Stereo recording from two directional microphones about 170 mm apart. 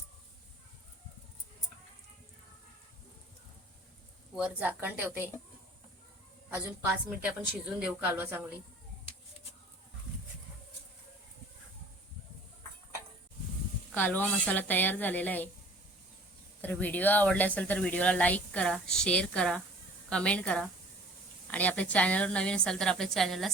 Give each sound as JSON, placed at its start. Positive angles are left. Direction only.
{"t": 4.4, "sound": "a woman's voice", "side_deg": -10}
{"t": 6.5, "sound": "a woman's voice", "side_deg": -10}
{"t": 13.9, "sound": "speech", "side_deg": 10}
{"t": 16.6, "sound": "a woman's voice", "side_deg": 10}